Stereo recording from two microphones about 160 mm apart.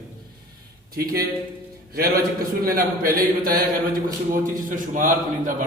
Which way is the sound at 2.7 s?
65° right (ahead or behind).